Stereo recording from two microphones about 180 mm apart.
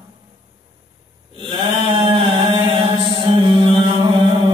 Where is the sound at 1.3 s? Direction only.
30° right (ahead or behind).